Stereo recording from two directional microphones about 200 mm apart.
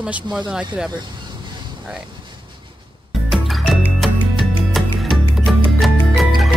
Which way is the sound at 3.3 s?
Centre (ahead or behind).